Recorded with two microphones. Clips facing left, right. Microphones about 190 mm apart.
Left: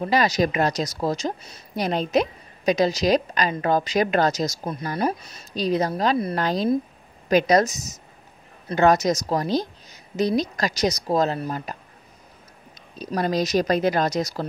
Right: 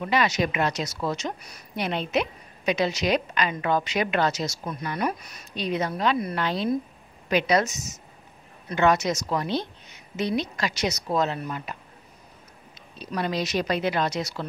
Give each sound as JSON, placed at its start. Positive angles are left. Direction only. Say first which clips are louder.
{"t": 0.0, "sound": "a woman's voice", "louder": "left 3 dB", "side_deg": 35}
{"t": 12.9, "sound": "a woman's voice", "louder": "left 4 dB", "side_deg": 40}